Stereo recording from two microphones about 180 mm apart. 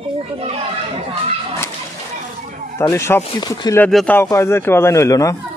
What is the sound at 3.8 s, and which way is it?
A man's voice, 5° left (ahead or behind).